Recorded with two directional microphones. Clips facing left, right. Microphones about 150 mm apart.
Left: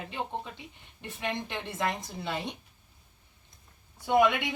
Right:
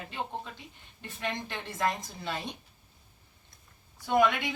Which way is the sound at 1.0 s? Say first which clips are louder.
Left 1 dB; 20° left (ahead or behind).